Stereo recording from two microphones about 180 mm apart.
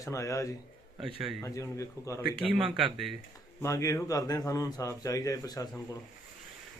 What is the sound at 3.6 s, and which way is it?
A man's voice, 15° left (ahead or behind).